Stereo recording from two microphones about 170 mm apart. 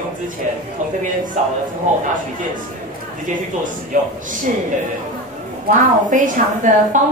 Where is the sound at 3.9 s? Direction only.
50° right (ahead or behind).